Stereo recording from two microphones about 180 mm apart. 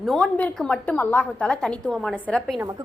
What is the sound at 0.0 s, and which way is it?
A woman's voice, centre (ahead or behind).